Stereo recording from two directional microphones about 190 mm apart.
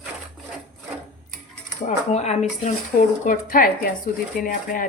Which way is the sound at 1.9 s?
35° left (ahead or behind).